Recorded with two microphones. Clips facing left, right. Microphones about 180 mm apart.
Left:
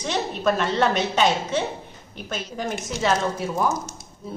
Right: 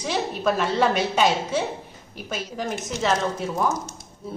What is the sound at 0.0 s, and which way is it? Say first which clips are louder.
A woman's voice: left 1 dB; 5° right (ahead or behind).